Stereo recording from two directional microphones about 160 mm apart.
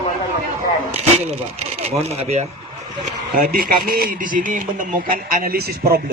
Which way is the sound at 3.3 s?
65° right (ahead or behind).